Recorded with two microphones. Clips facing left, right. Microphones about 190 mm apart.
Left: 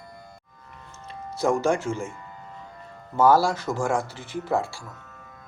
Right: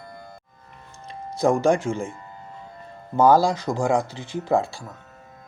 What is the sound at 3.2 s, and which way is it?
Speech, 15° right (ahead or behind).